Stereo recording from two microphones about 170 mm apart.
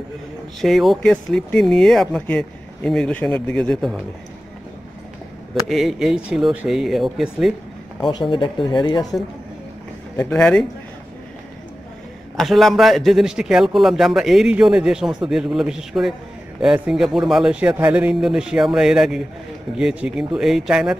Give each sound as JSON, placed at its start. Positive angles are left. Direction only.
{"t": 0.6, "sound": "speech", "side_deg": 0}
{"t": 5.5, "sound": "speech", "side_deg": 0}
{"t": 8.0, "sound": "speech", "side_deg": 25}
{"t": 10.1, "sound": "speech", "side_deg": 5}
{"t": 12.4, "sound": "speech", "side_deg": 0}